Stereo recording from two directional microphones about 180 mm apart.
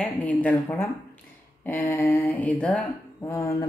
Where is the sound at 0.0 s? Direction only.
10° left (ahead or behind).